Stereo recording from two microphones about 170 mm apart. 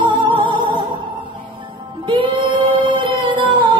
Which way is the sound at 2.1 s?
30° right (ahead or behind).